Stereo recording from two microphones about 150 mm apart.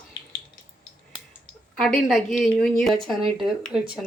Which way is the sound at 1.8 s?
Centre (ahead or behind).